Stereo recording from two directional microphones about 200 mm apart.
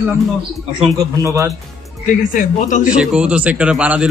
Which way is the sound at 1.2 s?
15° right (ahead or behind).